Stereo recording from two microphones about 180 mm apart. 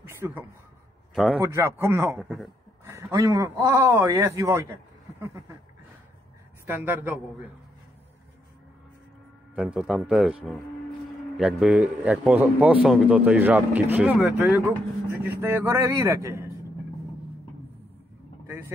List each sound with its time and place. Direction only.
0.1 s speech: 15° right (ahead or behind)
1.1 s a man's voice: centre (ahead or behind)
1.4 s a man's voice: 15° right (ahead or behind)
2.1 s speech: centre (ahead or behind)
2.8 s a man's voice: 15° right (ahead or behind)
6.6 s a man's voice: 10° right (ahead or behind)
9.6 s a man's voice: 5° right (ahead or behind)